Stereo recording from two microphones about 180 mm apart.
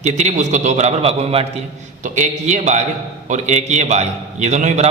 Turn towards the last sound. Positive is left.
turn(degrees=-40)  # may be behind; listen again after turning